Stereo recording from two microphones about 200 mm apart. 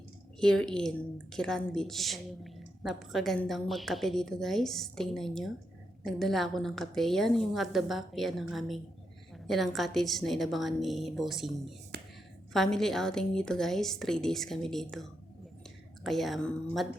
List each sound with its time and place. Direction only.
0.3 s a woman's voice: 5° left (ahead or behind)
11.9 s a sound: 55° right (ahead or behind)
12.5 s a woman's voice: centre (ahead or behind)